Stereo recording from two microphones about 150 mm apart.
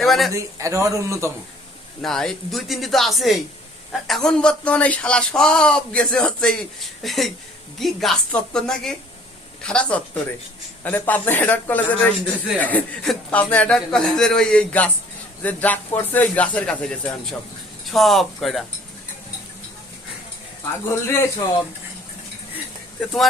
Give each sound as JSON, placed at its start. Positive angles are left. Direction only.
{"t": 0.0, "sound": "a man's voice", "side_deg": 0}
{"t": 0.3, "sound": "a man's voice", "side_deg": -20}
{"t": 2.0, "sound": "a man's voice", "side_deg": 5}
{"t": 20.9, "sound": "a man's voice", "side_deg": 15}